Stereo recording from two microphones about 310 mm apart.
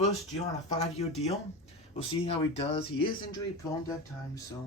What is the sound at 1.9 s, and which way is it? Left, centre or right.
Speech, centre.